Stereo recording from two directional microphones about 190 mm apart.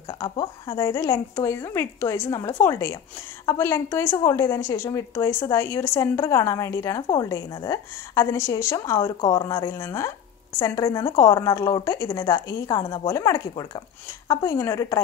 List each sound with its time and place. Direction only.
0.1 s a woman's voice: 20° left (ahead or behind)